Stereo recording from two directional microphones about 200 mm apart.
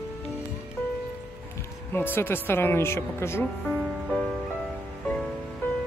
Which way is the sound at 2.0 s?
10° left (ahead or behind).